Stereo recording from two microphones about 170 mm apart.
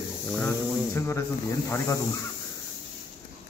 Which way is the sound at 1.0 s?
15° left (ahead or behind).